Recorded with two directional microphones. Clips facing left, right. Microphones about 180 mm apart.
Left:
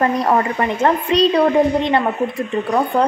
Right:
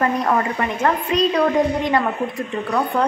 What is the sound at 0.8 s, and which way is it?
A woman's voice, 30° left (ahead or behind).